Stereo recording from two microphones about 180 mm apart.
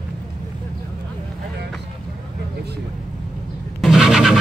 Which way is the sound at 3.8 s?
Centre (ahead or behind).